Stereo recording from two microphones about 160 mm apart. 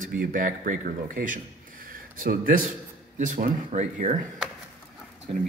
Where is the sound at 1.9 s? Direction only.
60° right (ahead or behind).